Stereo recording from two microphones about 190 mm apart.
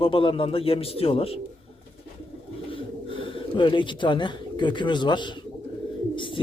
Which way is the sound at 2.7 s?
30° left (ahead or behind).